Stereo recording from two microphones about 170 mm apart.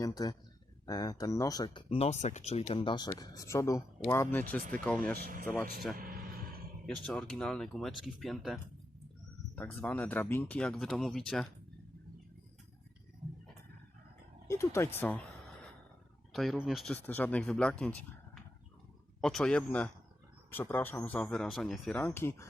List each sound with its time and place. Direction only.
0.0 s speech: 20° left (ahead or behind); by 5.1 s 5° left (ahead or behind)
5.1 s speech: 60° right (ahead or behind)
6.0 s vehicle: 60° right (ahead or behind)
6.8 s speech: 5° left (ahead or behind)
9.6 s speech: 10° left (ahead or behind)
14.4 s speech: 15° left (ahead or behind)
16.3 s speech: centre (ahead or behind)
19.2 s speech: 5° left (ahead or behind)